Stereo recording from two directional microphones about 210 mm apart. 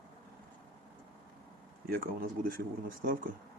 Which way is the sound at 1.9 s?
45° right (ahead or behind).